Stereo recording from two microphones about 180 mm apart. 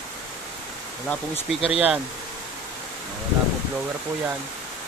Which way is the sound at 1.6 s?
5° right (ahead or behind).